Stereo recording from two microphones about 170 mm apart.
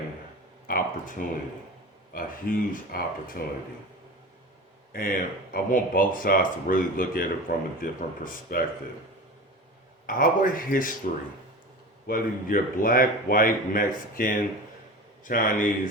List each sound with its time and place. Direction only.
0.7 s a sound: 50° left (ahead or behind)
2.1 s speech: 55° left (ahead or behind)
4.9 s speech: 55° left (ahead or behind)
10.1 s speech: 55° left (ahead or behind)
12.0 s a man's voice: 60° left (ahead or behind)